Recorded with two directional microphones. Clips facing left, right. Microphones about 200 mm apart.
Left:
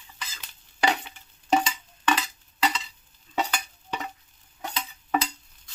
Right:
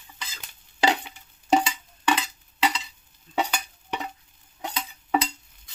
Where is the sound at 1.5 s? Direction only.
20° right (ahead or behind).